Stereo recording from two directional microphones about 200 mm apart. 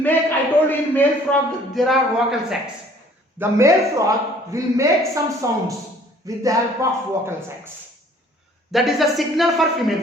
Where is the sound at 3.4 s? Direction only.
15° right (ahead or behind).